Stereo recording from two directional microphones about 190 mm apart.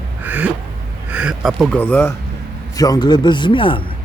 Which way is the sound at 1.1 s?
5° right (ahead or behind).